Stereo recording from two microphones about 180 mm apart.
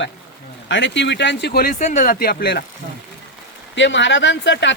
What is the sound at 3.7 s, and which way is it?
Speech, 90° left.